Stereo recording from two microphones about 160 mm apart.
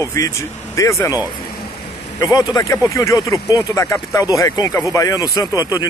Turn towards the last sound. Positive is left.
turn(degrees=20)  # may be behind; listen again after turning